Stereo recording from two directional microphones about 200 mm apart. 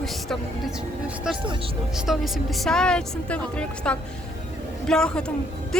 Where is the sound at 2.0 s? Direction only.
Centre (ahead or behind).